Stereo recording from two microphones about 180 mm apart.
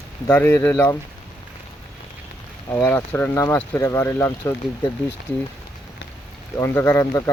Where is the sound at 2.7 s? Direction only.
5° left (ahead or behind).